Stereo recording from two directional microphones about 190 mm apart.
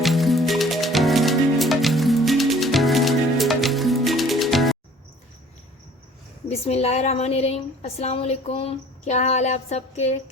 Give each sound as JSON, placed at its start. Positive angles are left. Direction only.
{"t": 0.0, "sound": "music", "side_deg": 0}
{"t": 6.5, "sound": "a woman's voice", "side_deg": 35}